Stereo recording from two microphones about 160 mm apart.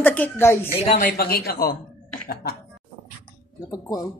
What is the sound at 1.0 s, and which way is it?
Speech, 70° left (ahead or behind).